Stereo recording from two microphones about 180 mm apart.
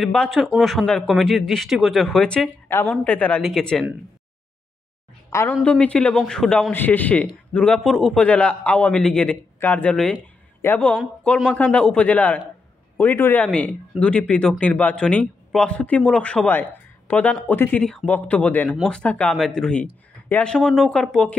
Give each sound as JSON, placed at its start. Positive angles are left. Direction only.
{"t": 0.0, "sound": "a man's voice", "side_deg": 5}
{"t": 5.3, "sound": "a woman's voice", "side_deg": 15}